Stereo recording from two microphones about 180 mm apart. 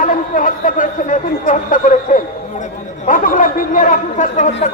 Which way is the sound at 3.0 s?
50° left (ahead or behind).